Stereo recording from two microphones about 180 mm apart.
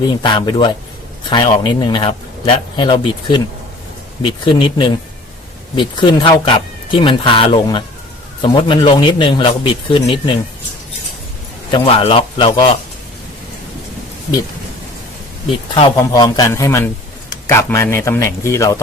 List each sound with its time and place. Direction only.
0.2 s speech: 25° left (ahead or behind)
11.7 s speech: 30° left (ahead or behind)
15.7 s speech: 20° left (ahead or behind)